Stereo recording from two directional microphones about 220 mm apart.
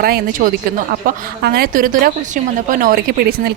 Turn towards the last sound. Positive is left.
turn(degrees=-45)  # may be behind; listen again after turning